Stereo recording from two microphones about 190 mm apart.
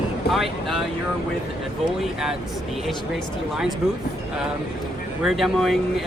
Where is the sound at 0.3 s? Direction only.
Centre (ahead or behind).